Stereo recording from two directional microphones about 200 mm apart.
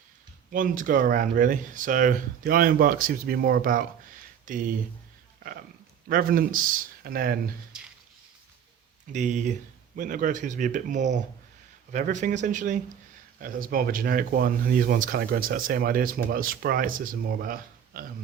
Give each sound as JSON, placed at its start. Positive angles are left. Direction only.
{"t": 0.5, "sound": "speech", "side_deg": -40}
{"t": 6.1, "sound": "speech", "side_deg": -45}
{"t": 9.1, "sound": "speech", "side_deg": -35}